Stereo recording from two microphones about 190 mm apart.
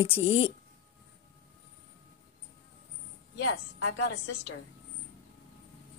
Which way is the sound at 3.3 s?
65° left (ahead or behind).